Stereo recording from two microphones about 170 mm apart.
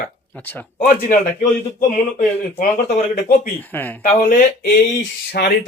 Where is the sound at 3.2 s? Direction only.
65° left (ahead or behind).